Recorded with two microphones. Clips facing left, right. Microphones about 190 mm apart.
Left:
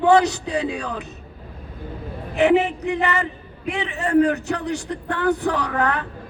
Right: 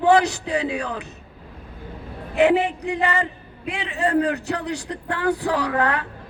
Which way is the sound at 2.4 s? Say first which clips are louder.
Left 1 dB; 35° right (ahead or behind).